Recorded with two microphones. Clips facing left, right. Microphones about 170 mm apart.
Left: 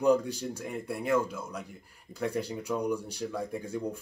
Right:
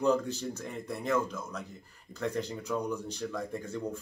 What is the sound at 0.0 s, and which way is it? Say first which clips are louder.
Speech: left 3 dB; 10° left (ahead or behind).